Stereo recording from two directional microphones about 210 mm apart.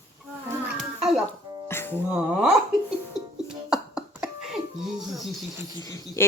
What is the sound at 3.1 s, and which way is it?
Cough, centre (ahead or behind).